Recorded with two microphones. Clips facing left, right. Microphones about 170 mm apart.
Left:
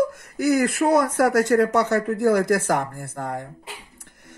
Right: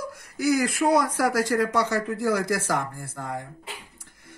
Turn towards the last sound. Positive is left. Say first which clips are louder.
# left 4 dB
turn(degrees=55)  # may be behind; listen again after turning